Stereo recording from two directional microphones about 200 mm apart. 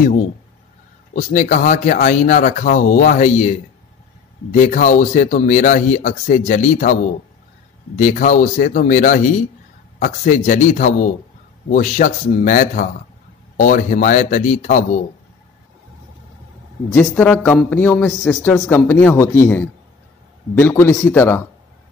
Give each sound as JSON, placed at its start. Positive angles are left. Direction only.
{"t": 1.1, "sound": "a man's voice", "side_deg": 40}
{"t": 16.9, "sound": "a man's voice", "side_deg": 10}